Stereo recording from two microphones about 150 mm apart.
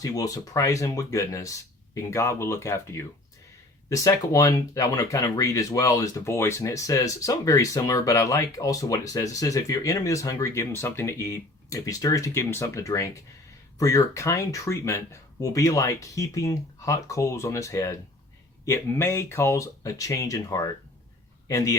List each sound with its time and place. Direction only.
0.0 s a man's voice: 25° left (ahead or behind)